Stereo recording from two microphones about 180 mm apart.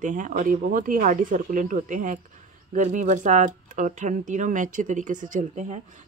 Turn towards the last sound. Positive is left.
turn(degrees=-45)  # may be behind; listen again after turning